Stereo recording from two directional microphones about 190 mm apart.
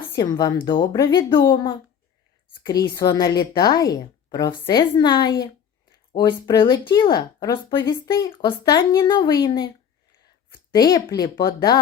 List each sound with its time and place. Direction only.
0.2 s speech: 20° left (ahead or behind)